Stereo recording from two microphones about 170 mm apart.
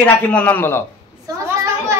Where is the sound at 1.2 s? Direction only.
15° right (ahead or behind).